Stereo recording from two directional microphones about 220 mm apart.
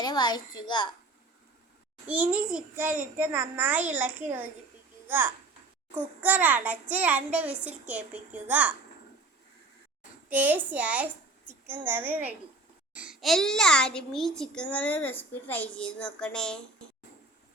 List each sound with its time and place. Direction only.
0.0 s a child's voice: 20° left (ahead or behind)
2.0 s a child's voice: 5° right (ahead or behind)
10.2 s a child's voice: 10° right (ahead or behind)